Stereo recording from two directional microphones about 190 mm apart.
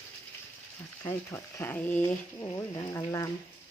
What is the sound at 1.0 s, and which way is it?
Speech, 10° left (ahead or behind).